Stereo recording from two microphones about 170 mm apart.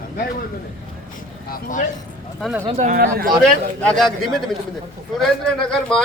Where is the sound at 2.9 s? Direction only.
60° right (ahead or behind).